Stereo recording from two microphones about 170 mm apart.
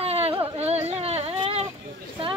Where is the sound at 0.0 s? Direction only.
35° right (ahead or behind).